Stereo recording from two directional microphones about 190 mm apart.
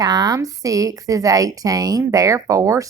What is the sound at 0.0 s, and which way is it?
A woman's voice, 20° right (ahead or behind).